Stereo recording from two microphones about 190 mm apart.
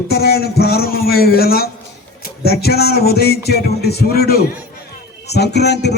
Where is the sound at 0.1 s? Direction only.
55° left (ahead or behind).